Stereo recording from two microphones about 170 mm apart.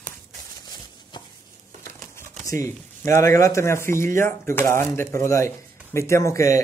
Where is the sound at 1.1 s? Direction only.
25° left (ahead or behind).